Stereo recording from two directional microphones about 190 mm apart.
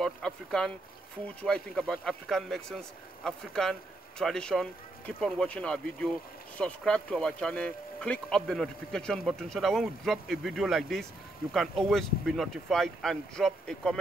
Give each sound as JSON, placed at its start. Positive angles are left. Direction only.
{"t": 0.0, "sound": "speech", "side_deg": 0}